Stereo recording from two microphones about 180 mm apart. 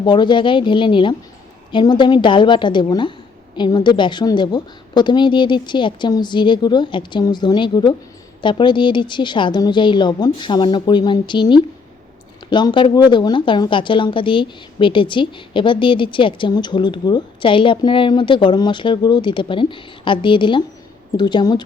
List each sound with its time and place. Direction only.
0.0 s speech: 25° left (ahead or behind)